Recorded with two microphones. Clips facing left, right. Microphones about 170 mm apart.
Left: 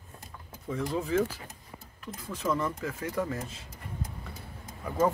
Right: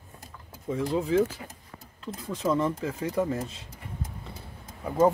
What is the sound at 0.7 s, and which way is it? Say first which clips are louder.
Speech: right 4 dB; 25° right (ahead or behind).